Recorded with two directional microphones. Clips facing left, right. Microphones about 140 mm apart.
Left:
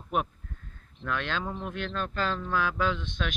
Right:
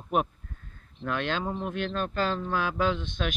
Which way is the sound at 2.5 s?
10° right (ahead or behind).